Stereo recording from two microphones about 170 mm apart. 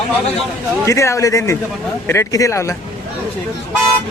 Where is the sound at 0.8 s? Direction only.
15° left (ahead or behind).